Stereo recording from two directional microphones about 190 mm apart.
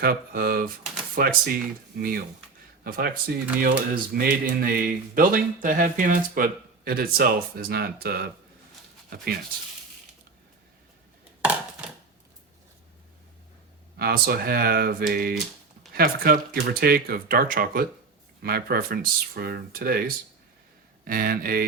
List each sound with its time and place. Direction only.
0.0 s speech: 50° right (ahead or behind)
13.9 s speech: 55° right (ahead or behind)